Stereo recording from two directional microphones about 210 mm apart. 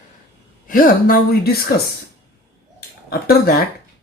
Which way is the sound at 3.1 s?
45° left (ahead or behind).